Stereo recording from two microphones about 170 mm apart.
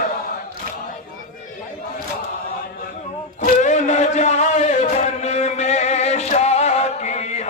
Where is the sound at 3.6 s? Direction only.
45° left (ahead or behind).